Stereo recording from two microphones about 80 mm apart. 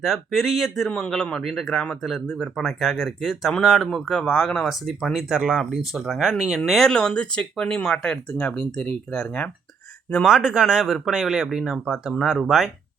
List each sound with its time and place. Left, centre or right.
0.0 s speech: centre
0.9 s speech: centre
4.7 s speech: centre
10.2 s speech: centre